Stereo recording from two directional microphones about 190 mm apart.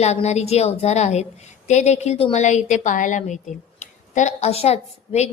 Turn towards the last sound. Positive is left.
turn(degrees=35)  # may be behind; listen again after turning